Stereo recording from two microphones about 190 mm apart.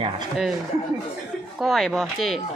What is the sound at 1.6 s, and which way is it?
Speech, centre (ahead or behind).